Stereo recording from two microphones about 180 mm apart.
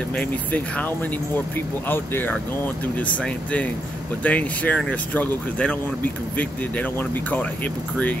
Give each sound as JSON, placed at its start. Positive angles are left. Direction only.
{"t": 0.1, "sound": "speech", "side_deg": 10}